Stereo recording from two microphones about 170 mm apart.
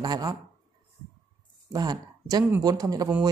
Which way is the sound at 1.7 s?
20° right (ahead or behind).